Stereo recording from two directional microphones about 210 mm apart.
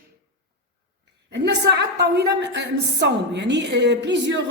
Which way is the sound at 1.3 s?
55° right (ahead or behind).